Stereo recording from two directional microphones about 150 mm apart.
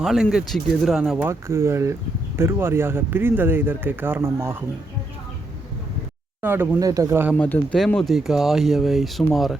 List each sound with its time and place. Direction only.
0.0 s speech: 5° right (ahead or behind)
1.2 s speech: 20° right (ahead or behind)
6.4 s speech: 15° right (ahead or behind)
7.3 s speech: 10° left (ahead or behind)